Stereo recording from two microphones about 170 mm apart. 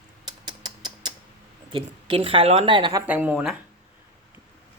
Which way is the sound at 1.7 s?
30° right (ahead or behind).